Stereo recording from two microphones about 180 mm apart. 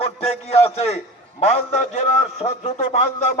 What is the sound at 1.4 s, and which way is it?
A man's voice, 35° left (ahead or behind).